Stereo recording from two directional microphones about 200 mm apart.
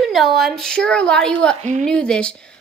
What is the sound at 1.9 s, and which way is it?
Speech, 5° left (ahead or behind).